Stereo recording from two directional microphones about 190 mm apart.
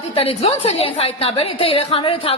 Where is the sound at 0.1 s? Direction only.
30° left (ahead or behind).